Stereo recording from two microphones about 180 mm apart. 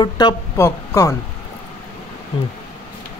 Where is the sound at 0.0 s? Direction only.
25° left (ahead or behind).